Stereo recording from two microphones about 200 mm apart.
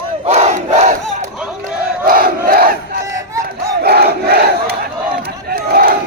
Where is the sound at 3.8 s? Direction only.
50° right (ahead or behind).